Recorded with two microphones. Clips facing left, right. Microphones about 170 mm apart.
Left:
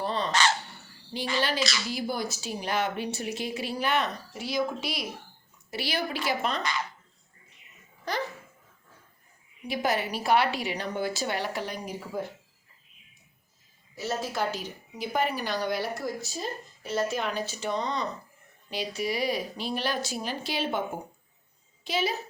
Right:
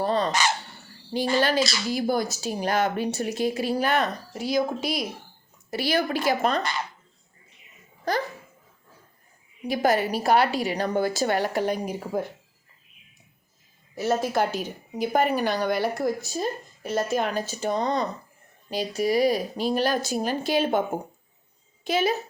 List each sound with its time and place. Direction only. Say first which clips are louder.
0.0 s dog: right 6 dB; 45° right (ahead or behind)
0.3 s dog: right 1 dB; 10° right (ahead or behind)
1.1 s a woman's voice: right 7 dB; 45° right (ahead or behind)
9.6 s speech: right 6 dB; 40° right (ahead or behind)
13.9 s a woman's voice: right 8 dB; 55° right (ahead or behind)